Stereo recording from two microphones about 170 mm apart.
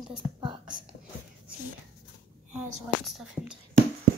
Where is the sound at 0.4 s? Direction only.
30° right (ahead or behind).